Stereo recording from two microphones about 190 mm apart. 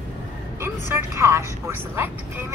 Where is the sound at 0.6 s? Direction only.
15° right (ahead or behind).